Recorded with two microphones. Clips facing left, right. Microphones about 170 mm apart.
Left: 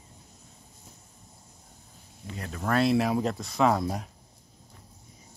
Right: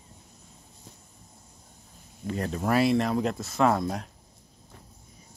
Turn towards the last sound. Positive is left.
turn(degrees=5)  # may be behind; listen again after turning